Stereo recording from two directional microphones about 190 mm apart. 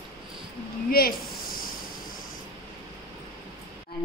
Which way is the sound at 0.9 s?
50° left (ahead or behind).